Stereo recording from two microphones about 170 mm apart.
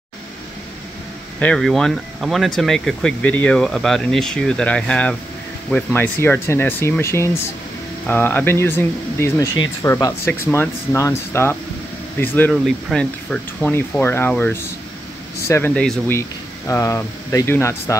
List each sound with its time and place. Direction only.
1.4 s speech: 5° left (ahead or behind)
16.2 s speech: 15° left (ahead or behind)